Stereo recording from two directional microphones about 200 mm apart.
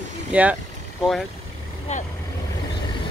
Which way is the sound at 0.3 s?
5° right (ahead or behind).